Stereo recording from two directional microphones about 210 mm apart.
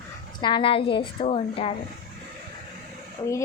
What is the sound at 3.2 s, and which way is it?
Speech, 25° left (ahead or behind).